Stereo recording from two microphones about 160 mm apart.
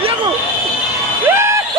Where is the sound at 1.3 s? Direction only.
15° right (ahead or behind).